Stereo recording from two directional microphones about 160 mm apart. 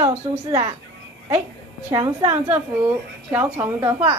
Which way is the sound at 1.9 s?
20° right (ahead or behind).